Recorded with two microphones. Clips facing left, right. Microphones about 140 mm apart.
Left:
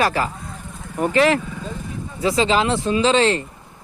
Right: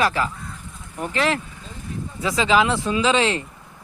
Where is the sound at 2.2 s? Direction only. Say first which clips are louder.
Left 1 dB; 35° left (ahead or behind).